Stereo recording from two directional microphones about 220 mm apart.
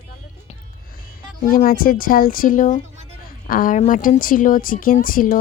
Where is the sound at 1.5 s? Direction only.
40° left (ahead or behind).